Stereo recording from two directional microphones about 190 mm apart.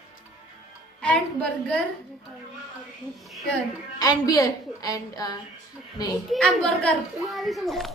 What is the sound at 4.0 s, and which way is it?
A woman's voice, 20° left (ahead or behind).